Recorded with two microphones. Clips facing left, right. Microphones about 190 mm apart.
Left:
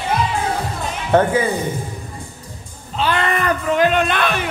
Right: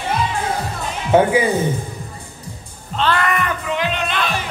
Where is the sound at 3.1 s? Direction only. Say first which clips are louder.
Left 1 dB; 30° left (ahead or behind).